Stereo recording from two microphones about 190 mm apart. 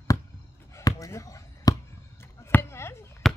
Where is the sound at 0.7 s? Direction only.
15° left (ahead or behind).